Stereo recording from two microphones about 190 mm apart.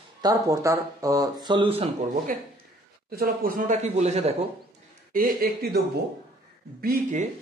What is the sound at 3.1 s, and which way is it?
Speech, 50° right (ahead or behind).